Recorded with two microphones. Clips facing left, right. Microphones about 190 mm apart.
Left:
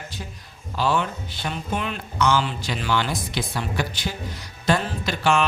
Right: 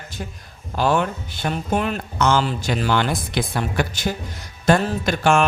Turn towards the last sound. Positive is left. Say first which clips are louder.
# right 4 dB
turn(degrees=-50)  # may be behind; listen again after turning